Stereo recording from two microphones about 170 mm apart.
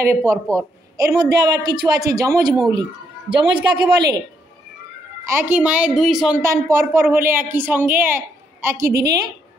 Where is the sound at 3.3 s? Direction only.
90° right.